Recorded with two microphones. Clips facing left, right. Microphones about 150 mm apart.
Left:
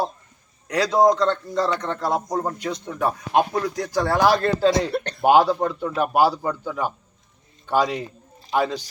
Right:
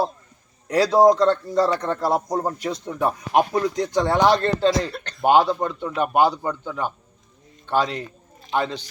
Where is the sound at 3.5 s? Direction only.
20° right (ahead or behind).